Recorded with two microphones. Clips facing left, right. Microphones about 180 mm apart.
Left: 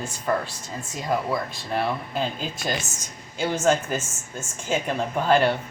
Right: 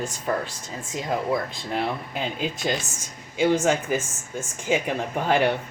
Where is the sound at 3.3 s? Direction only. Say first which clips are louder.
Right 1 dB; 15° right (ahead or behind).